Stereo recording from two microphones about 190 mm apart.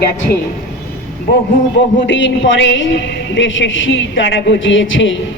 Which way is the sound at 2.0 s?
70° left (ahead or behind).